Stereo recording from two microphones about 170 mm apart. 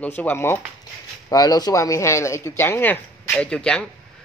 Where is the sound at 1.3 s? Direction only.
20° left (ahead or behind).